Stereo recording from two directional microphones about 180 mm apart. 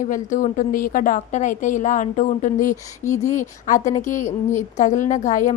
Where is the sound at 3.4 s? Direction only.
45° left (ahead or behind).